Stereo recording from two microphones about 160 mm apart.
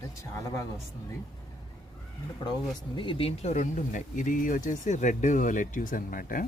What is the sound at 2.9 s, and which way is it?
Speech, 30° left (ahead or behind).